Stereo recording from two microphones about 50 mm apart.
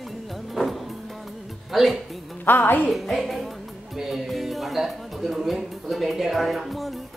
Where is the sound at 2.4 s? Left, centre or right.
Left.